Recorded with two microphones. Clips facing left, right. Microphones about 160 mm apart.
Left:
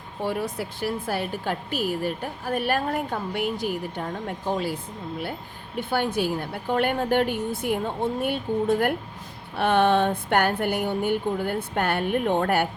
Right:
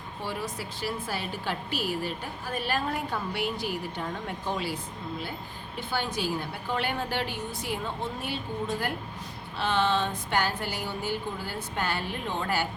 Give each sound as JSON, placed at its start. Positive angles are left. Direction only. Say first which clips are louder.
{"t": 0.2, "sound": "a woman's voice", "louder": "left 7 dB", "side_deg": 55}
{"t": 5.7, "sound": "a woman's voice", "louder": "left 7 dB", "side_deg": 60}